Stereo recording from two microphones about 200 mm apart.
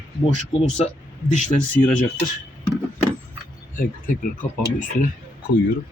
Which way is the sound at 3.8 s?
40° left (ahead or behind).